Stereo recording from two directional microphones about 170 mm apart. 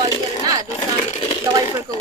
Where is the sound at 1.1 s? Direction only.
35° left (ahead or behind).